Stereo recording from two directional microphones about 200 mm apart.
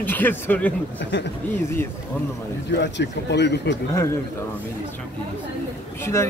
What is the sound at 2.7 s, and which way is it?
Speech, 60° left (ahead or behind).